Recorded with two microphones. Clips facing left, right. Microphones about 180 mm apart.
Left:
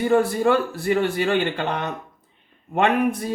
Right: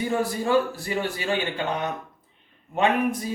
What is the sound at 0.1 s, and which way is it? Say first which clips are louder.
A man's voice: left 5 dB; 60° left (ahead or behind).